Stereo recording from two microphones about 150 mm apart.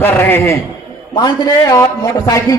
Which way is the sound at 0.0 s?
15° left (ahead or behind).